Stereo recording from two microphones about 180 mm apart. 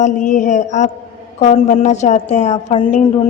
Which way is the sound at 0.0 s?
45° left (ahead or behind).